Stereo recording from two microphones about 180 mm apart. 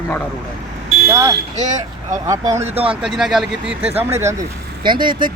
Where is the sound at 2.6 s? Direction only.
30° right (ahead or behind).